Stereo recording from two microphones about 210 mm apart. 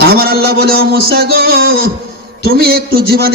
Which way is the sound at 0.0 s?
45° right (ahead or behind).